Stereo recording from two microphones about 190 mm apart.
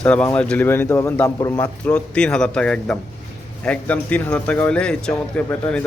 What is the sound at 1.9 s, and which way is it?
A man's voice, 5° left (ahead or behind).